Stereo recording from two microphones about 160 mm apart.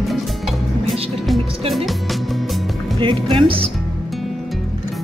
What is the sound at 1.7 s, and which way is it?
Speech, centre (ahead or behind).